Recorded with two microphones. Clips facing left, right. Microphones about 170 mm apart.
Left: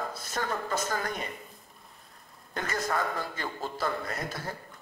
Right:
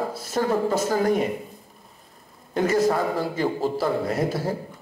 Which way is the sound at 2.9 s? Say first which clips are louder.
Right 7 dB; 30° right (ahead or behind).